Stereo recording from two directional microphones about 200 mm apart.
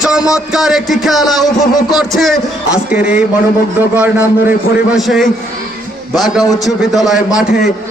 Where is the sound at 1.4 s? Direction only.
20° left (ahead or behind).